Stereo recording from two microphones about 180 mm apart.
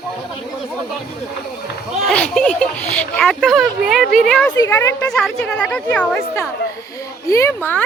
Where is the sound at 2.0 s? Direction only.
5° left (ahead or behind).